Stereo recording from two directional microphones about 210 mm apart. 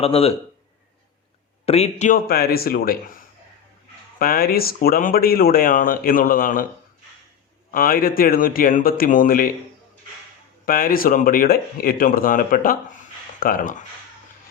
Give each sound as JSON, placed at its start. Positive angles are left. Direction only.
{"t": 0.0, "sound": "speech", "side_deg": 30}
{"t": 1.6, "sound": "speech", "side_deg": 30}
{"t": 4.2, "sound": "speech", "side_deg": 45}
{"t": 7.7, "sound": "speech", "side_deg": 45}
{"t": 10.7, "sound": "speech", "side_deg": 45}